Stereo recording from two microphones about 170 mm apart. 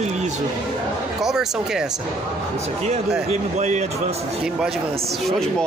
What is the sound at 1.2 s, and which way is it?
Speech, 5° right (ahead or behind).